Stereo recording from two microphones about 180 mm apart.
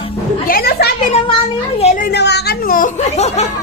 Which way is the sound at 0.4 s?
55° left (ahead or behind).